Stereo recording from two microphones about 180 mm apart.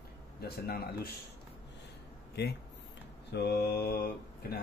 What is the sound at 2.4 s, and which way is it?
Speech, 70° left (ahead or behind).